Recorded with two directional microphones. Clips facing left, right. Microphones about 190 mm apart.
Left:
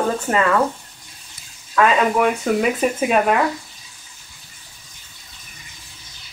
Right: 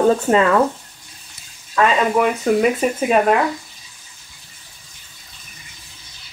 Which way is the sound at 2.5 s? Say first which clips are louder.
Right 2 dB; centre (ahead or behind).